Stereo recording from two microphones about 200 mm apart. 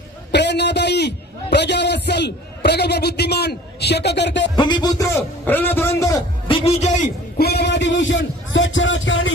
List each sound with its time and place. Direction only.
0.3 s a man's voice: 60° left (ahead or behind)
4.5 s a man's voice: 20° left (ahead or behind)
6.5 s a man's voice: 35° left (ahead or behind)
7.3 s a man's voice: 55° left (ahead or behind); by 9.3 s 70° left (ahead or behind)